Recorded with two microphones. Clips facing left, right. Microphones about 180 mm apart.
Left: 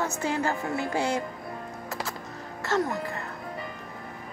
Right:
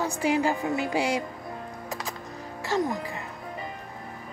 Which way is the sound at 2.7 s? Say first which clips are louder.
Even; 15° right (ahead or behind).